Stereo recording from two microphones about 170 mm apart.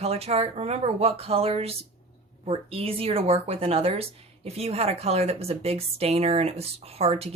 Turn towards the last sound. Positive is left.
turn(degrees=-35)  # may be behind; listen again after turning